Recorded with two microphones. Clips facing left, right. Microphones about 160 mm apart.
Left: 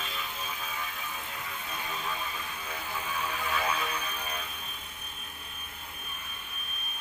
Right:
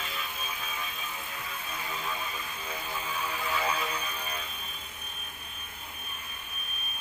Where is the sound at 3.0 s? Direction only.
10° right (ahead or behind).